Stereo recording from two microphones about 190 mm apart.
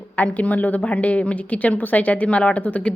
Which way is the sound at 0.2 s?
5° left (ahead or behind).